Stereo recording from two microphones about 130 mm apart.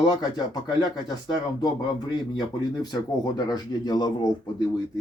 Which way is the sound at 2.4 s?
30° left (ahead or behind).